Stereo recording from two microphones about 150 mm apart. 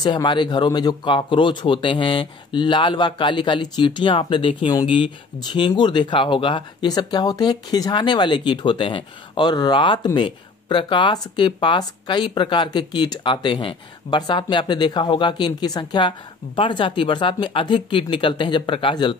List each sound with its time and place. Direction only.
0.0 s speech: 30° left (ahead or behind)